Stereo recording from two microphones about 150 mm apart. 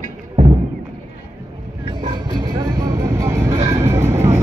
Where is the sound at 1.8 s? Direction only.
30° right (ahead or behind).